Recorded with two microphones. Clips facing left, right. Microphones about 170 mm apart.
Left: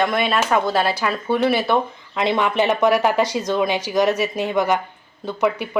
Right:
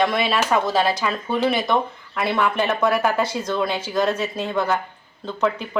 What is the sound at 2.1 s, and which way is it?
Speech, 20° left (ahead or behind).